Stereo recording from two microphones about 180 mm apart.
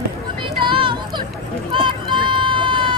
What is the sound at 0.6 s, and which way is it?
Vehicle, 25° right (ahead or behind).